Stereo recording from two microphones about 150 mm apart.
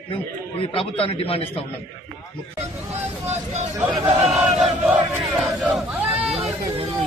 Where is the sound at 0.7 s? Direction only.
40° left (ahead or behind).